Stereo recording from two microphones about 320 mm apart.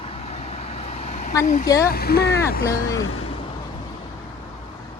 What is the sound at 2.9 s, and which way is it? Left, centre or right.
Speech, left.